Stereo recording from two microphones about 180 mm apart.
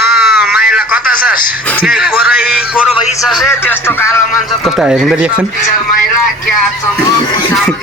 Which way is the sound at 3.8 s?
15° left (ahead or behind).